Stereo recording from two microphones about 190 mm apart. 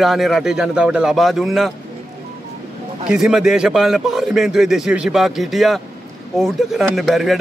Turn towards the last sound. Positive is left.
turn(degrees=0)  # may be behind; listen again after turning